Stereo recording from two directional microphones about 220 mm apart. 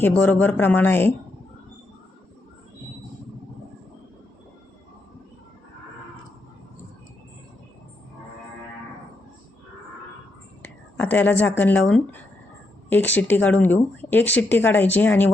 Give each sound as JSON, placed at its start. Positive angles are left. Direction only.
{"t": 0.0, "sound": "speech", "side_deg": 10}
{"t": 10.6, "sound": "a woman's voice", "side_deg": 5}